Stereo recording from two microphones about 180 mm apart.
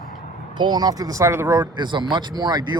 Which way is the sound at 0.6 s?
20° right (ahead or behind).